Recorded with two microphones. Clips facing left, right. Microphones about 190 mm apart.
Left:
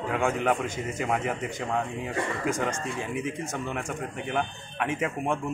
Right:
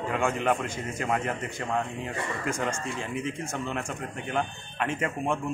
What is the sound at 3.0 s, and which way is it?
Speech, 65° left (ahead or behind).